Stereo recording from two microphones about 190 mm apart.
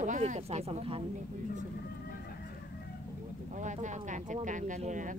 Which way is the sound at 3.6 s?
40° right (ahead or behind).